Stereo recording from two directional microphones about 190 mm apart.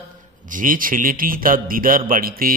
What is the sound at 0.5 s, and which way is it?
A man's voice, 45° right (ahead or behind).